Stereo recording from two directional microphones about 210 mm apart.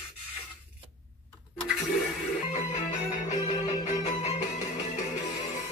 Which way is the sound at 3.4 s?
30° left (ahead or behind).